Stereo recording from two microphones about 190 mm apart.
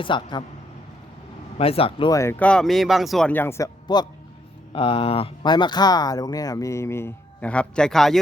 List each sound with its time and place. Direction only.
0.0 s speech: 25° left (ahead or behind)
1.5 s speech: 30° left (ahead or behind)
2.1 s speech: 10° left (ahead or behind)